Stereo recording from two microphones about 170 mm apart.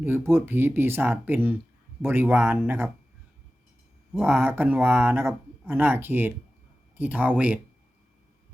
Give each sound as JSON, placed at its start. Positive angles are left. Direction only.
{"t": 0.0, "sound": "speech", "side_deg": -15}
{"t": 4.2, "sound": "speech", "side_deg": -15}